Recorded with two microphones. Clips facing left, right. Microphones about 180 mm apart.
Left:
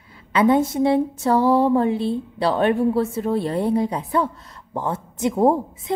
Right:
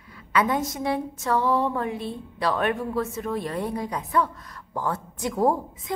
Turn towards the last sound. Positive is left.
turn(degrees=25)  # may be behind; listen again after turning